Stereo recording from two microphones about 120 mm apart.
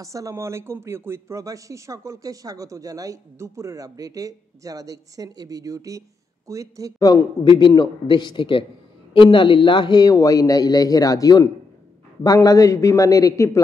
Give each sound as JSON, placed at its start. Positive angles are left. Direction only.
{"t": 0.0, "sound": "speech", "side_deg": -25}
{"t": 7.0, "sound": "speech", "side_deg": 30}